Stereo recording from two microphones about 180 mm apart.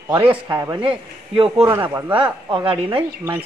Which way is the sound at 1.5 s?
15° right (ahead or behind).